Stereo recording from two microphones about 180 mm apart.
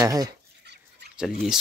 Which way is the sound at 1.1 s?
Centre (ahead or behind).